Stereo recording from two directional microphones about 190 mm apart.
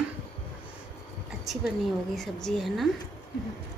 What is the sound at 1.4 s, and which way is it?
A woman's voice, centre (ahead or behind).